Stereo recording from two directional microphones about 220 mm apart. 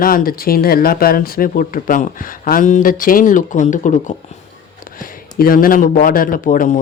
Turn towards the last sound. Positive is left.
turn(degrees=35)  # may be behind; listen again after turning